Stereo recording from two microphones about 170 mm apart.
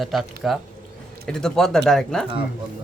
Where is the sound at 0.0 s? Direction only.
Centre (ahead or behind).